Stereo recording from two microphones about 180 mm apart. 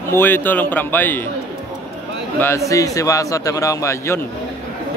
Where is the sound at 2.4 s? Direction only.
15° left (ahead or behind).